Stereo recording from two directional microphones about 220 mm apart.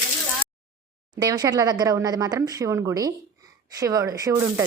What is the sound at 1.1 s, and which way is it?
Speech, 20° right (ahead or behind).